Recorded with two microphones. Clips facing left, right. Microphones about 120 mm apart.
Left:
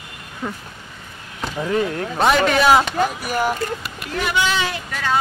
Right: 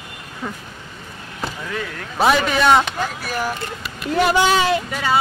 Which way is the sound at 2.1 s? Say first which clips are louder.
Even; centre (ahead or behind).